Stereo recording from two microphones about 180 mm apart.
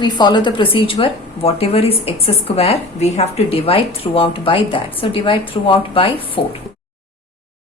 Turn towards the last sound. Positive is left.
turn(degrees=30)  # may be behind; listen again after turning